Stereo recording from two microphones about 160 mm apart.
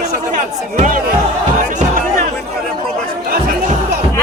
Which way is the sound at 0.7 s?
50° right (ahead or behind).